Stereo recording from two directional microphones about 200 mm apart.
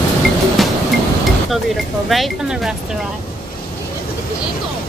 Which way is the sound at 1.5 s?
Centre (ahead or behind).